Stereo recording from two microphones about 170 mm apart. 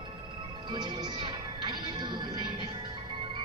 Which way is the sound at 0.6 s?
25° right (ahead or behind).